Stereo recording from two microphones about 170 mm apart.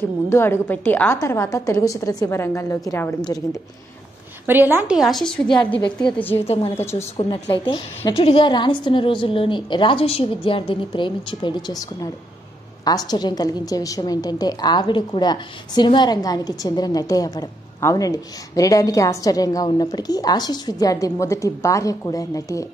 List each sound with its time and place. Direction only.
0.3 s a woman's voice: 15° left (ahead or behind)
4.5 s a woman's voice: 10° right (ahead or behind)
4.9 s a woman's voice: centre (ahead or behind)
6.4 s a woman's voice: 35° left (ahead or behind)
6.7 s a woman's voice: 15° left (ahead or behind)
7.2 s a woman's voice: 35° left (ahead or behind); by 22.7 s 20° left (ahead or behind)